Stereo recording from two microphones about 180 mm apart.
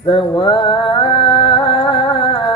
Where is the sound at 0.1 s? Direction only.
30° left (ahead or behind).